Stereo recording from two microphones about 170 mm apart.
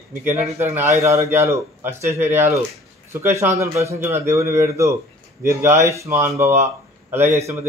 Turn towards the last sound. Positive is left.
turn(degrees=-15)  # may be behind; listen again after turning